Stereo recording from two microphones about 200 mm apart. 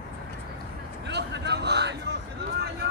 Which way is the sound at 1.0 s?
60° right (ahead or behind).